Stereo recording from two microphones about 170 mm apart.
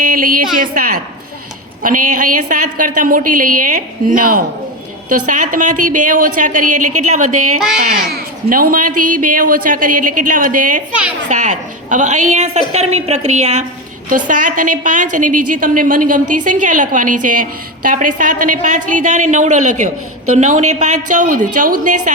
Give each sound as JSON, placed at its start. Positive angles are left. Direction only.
{"t": 0.0, "sound": "a woman's voice", "side_deg": -55}